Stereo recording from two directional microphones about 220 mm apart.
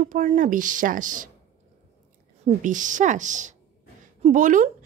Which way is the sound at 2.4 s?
35° right (ahead or behind).